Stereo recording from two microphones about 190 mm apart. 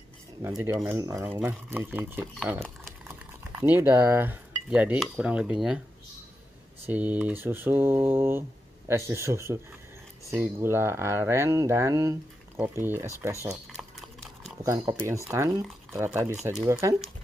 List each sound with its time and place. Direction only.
0.4 s speech: 15° right (ahead or behind)
6.9 s speech: 10° right (ahead or behind)
13.5 s a sound: 5° right (ahead or behind)
14.6 s speech: 15° right (ahead or behind)